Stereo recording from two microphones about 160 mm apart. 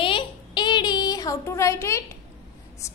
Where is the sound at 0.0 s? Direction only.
30° left (ahead or behind).